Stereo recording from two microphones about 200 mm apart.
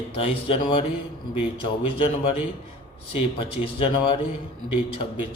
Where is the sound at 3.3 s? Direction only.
25° left (ahead or behind).